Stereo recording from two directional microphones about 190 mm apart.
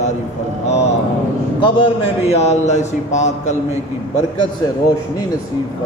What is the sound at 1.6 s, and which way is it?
A man's voice, 30° left (ahead or behind).